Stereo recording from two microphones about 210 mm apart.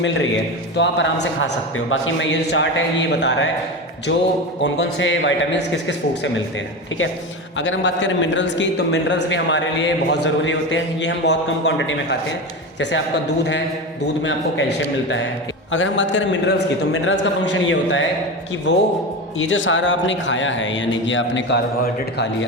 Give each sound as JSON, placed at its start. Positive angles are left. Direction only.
{"t": 0.8, "sound": "a man's voice", "side_deg": 60}
{"t": 4.6, "sound": "a man's voice", "side_deg": 60}
{"t": 7.6, "sound": "a man's voice", "side_deg": 60}
{"t": 14.0, "sound": "a man's voice", "side_deg": 60}
{"t": 15.7, "sound": "a man's voice", "side_deg": 65}